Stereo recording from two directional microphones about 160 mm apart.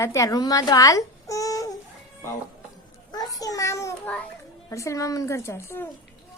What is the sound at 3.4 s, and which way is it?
A woman's voice, 20° left (ahead or behind).